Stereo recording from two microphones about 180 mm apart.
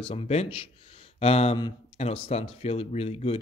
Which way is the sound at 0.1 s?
35° left (ahead or behind).